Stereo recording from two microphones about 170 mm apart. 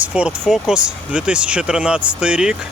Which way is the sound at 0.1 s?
5° right (ahead or behind).